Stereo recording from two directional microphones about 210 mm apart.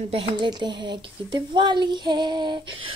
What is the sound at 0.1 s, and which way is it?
Speech, 25° right (ahead or behind).